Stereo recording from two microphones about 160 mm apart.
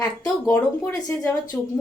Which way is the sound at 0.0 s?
15° left (ahead or behind).